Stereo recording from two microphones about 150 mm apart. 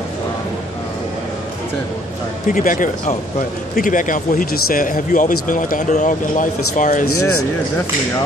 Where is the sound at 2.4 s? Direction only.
60° left (ahead or behind).